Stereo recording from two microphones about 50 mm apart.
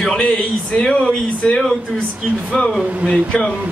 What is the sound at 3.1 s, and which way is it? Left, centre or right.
Speech, centre.